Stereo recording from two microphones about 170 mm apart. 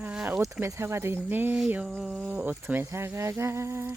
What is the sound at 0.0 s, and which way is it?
Insect, 10° right (ahead or behind).